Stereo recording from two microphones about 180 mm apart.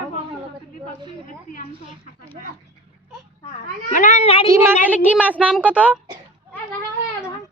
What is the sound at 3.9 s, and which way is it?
Speech, 45° left (ahead or behind).